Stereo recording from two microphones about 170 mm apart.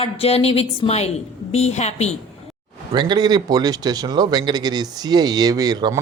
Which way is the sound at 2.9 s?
25° right (ahead or behind).